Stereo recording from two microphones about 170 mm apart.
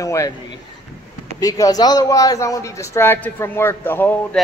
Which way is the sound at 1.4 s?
20° left (ahead or behind).